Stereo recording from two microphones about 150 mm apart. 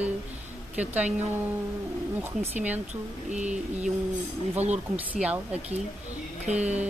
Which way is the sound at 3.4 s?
50° right (ahead or behind).